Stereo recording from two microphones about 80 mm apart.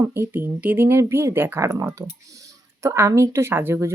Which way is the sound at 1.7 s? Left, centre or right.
Right.